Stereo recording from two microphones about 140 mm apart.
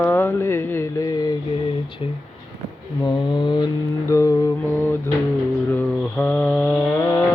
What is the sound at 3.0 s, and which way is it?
Mantra, 35° left (ahead or behind).